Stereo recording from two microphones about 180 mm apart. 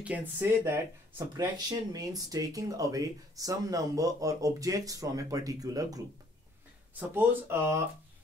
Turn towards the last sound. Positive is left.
turn(degrees=-15)  # may be behind; listen again after turning